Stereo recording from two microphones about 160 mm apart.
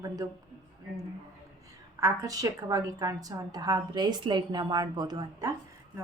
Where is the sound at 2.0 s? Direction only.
20° right (ahead or behind).